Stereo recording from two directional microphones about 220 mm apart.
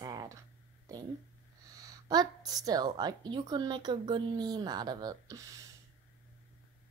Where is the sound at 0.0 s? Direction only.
20° right (ahead or behind).